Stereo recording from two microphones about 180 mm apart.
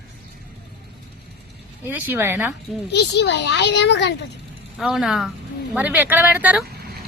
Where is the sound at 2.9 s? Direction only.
70° left (ahead or behind).